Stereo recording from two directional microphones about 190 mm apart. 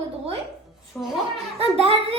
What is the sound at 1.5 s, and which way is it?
Child singing, 30° right (ahead or behind).